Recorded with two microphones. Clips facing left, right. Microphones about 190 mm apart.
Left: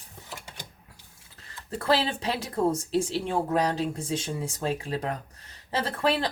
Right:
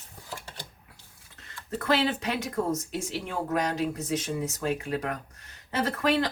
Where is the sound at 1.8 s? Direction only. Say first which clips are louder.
Even; 30° left (ahead or behind).